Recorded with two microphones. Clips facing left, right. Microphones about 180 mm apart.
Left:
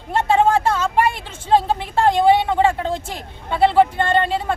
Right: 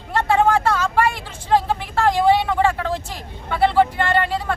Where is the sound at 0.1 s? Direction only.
20° left (ahead or behind).